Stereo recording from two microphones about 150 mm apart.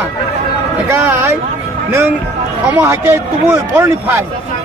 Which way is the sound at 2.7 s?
15° right (ahead or behind).